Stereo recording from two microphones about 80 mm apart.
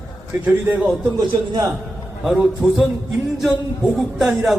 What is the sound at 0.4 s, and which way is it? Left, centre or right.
Speech, right.